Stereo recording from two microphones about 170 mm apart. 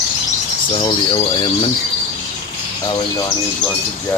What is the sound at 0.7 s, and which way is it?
Speech, 30° left (ahead or behind).